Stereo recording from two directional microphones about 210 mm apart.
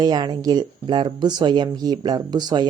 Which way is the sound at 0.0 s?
20° right (ahead or behind).